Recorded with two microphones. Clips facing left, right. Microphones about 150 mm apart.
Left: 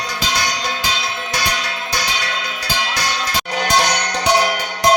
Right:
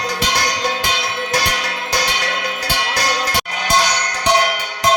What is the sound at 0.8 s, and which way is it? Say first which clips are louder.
Music: right 2 dB; 65° right (ahead or behind).